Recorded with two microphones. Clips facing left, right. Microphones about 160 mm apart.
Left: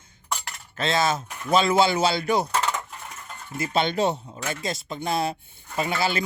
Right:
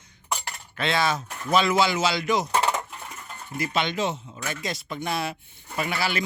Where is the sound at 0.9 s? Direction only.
25° left (ahead or behind).